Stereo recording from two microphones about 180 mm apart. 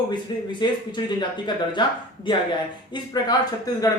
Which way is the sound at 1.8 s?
25° left (ahead or behind).